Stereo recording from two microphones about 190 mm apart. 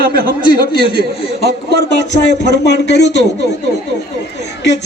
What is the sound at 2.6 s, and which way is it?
Speech, 60° left (ahead or behind).